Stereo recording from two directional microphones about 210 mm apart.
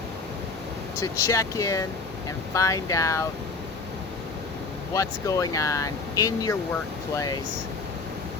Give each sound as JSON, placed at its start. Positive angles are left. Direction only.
{"t": 0.9, "sound": "speech", "side_deg": 15}
{"t": 4.9, "sound": "speech", "side_deg": 15}